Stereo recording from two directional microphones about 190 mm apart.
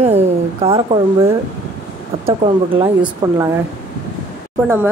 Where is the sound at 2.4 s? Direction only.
35° right (ahead or behind).